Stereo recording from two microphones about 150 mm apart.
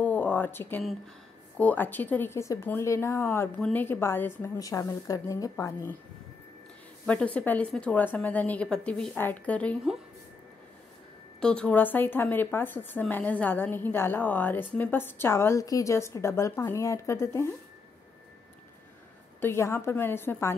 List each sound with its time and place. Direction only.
0.0 s a sound: 10° left (ahead or behind)
1.6 s speech: 10° left (ahead or behind)
7.1 s speech: 10° left (ahead or behind)
11.3 s speech: 5° left (ahead or behind)
19.4 s speech: 15° left (ahead or behind)